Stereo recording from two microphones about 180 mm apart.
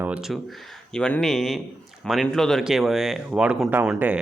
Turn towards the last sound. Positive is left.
turn(degrees=-5)  # may be behind; listen again after turning